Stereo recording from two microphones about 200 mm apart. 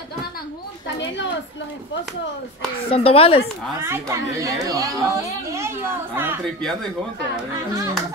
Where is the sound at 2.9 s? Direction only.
30° left (ahead or behind).